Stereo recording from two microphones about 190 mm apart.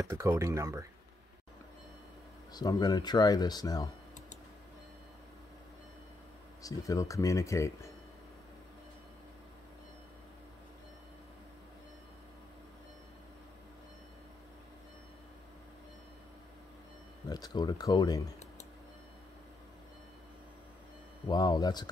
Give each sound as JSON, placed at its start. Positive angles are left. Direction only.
{"t": 0.0, "sound": "speech", "side_deg": -15}
{"t": 2.5, "sound": "speech", "side_deg": 20}
{"t": 6.6, "sound": "speech", "side_deg": 15}
{"t": 17.3, "sound": "speech", "side_deg": 20}
{"t": 21.3, "sound": "speech", "side_deg": 20}